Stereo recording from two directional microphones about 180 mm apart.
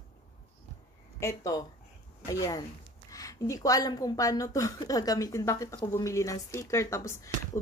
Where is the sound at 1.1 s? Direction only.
15° left (ahead or behind).